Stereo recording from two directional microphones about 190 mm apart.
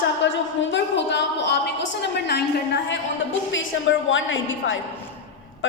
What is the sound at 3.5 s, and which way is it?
Speech, 85° left.